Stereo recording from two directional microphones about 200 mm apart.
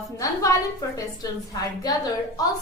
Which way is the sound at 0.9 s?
20° left (ahead or behind).